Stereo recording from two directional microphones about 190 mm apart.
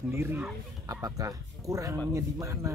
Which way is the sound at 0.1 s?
10° right (ahead or behind).